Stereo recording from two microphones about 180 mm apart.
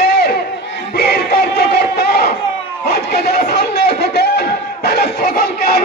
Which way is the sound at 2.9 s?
60° left (ahead or behind).